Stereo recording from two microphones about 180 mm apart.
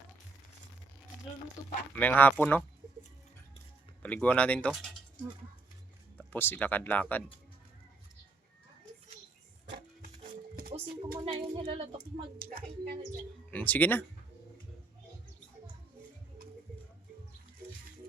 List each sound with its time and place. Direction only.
2.0 s speech: 10° left (ahead or behind)
4.0 s speech: 10° left (ahead or behind)
6.3 s speech: 10° left (ahead or behind)
9.6 s music: 65° right (ahead or behind)
10.7 s a woman's voice: 30° right (ahead or behind)
12.4 s speech: 55° right (ahead or behind)
13.5 s speech: 10° left (ahead or behind)